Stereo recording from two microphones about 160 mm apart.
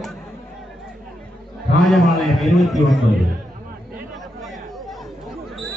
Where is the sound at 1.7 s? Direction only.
Centre (ahead or behind).